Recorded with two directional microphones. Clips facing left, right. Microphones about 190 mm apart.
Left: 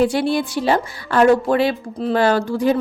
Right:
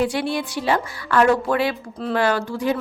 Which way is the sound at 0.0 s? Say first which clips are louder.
Left 5 dB; 35° left (ahead or behind).